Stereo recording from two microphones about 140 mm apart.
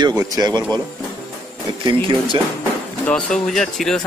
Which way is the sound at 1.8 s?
30° right (ahead or behind).